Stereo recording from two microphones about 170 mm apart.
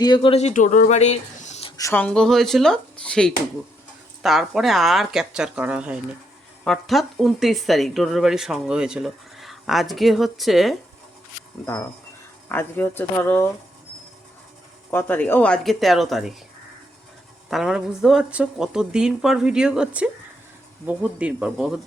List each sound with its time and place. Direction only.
0.0 s speech: 30° left (ahead or behind)
1.7 s speech: 15° left (ahead or behind); by 10.8 s centre (ahead or behind)
12.5 s speech: 10° left (ahead or behind)
14.8 s speech: 10° left (ahead or behind)
17.5 s speech: centre (ahead or behind)